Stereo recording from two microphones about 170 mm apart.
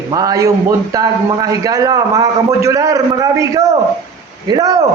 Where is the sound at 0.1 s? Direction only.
20° right (ahead or behind).